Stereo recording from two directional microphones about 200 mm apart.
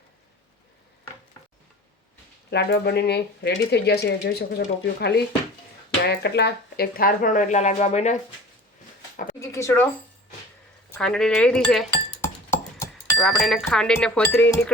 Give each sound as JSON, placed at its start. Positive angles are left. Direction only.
{"t": 2.5, "sound": "speech", "side_deg": 55}
{"t": 9.4, "sound": "a woman's voice", "side_deg": 15}
{"t": 10.9, "sound": "speech", "side_deg": 5}
{"t": 12.2, "sound": "a sound", "side_deg": 15}
{"t": 13.1, "sound": "speech", "side_deg": 0}